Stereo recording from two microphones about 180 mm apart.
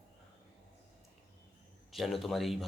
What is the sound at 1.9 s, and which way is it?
Speech, centre (ahead or behind).